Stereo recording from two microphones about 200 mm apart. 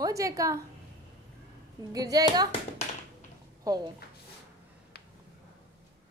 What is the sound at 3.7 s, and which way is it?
Speech, 15° right (ahead or behind).